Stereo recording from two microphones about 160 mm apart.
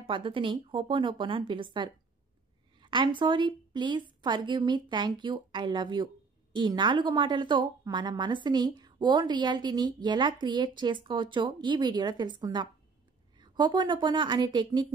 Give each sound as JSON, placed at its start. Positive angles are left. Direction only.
{"t": 0.0, "sound": "a woman's voice", "side_deg": -35}